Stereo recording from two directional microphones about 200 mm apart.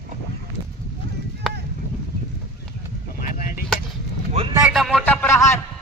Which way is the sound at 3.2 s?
45° left (ahead or behind).